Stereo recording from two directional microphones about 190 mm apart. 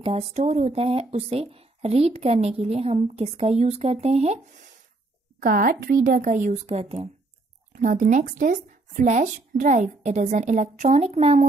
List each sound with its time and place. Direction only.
0.0 s speech: 35° right (ahead or behind)
5.4 s a woman's voice: 50° right (ahead or behind); by 11.4 s 35° right (ahead or behind)